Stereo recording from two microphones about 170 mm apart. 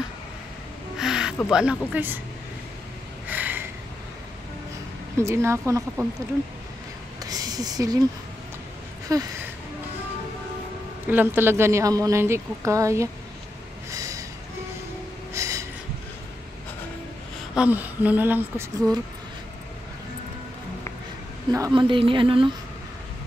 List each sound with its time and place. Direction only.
0.9 s music: 5° right (ahead or behind)
1.5 s a woman's voice: 5° right (ahead or behind)
3.3 s a sound: 10° right (ahead or behind)
5.1 s a woman's voice: 15° right (ahead or behind)
7.2 s speech: 20° right (ahead or behind)
9.1 s a woman's voice: 20° right (ahead or behind)
11.1 s a woman's voice: 10° right (ahead or behind)
13.9 s a sound: 20° right (ahead or behind)
15.3 s a sound: 20° right (ahead or behind)
17.6 s a woman's voice: 10° right (ahead or behind)
21.5 s a woman's voice: 20° right (ahead or behind)